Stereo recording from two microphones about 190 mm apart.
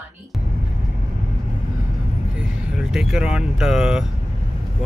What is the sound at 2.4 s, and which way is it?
Speech, 5° right (ahead or behind).